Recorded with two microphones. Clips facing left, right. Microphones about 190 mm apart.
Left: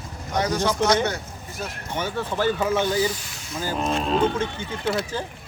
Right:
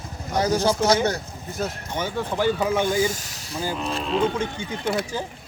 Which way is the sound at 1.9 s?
15° right (ahead or behind).